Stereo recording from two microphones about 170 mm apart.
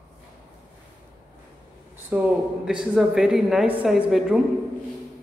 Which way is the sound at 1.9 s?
10° right (ahead or behind).